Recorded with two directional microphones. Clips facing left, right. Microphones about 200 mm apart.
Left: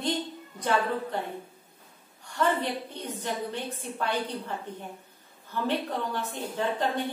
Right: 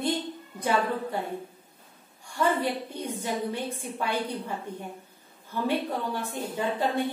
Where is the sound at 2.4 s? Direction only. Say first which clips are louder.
Right 1 dB; 10° right (ahead or behind).